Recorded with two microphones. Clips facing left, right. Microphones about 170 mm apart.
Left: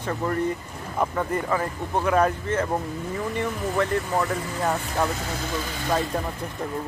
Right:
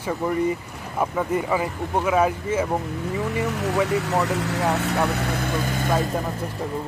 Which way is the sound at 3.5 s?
80° right.